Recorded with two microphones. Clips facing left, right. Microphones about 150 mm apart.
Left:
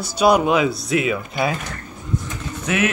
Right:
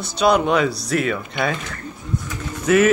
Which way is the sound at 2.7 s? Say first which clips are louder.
Right 7 dB; centre (ahead or behind).